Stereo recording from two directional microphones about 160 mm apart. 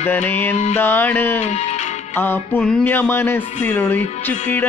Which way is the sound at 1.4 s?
45° left (ahead or behind).